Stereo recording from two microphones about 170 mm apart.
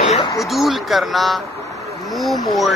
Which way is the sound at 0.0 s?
40° left (ahead or behind).